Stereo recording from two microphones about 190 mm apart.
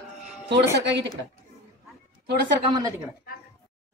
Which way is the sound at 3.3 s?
50° left (ahead or behind).